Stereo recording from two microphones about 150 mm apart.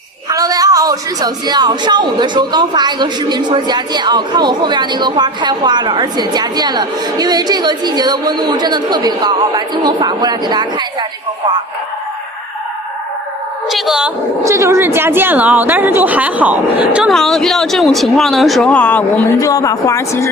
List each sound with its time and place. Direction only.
0.3 s a woman's voice: 25° right (ahead or behind)
13.7 s speech: centre (ahead or behind)
14.4 s a woman's voice: 20° right (ahead or behind); by 19.0 s 10° left (ahead or behind)
19.4 s speech: 25° left (ahead or behind)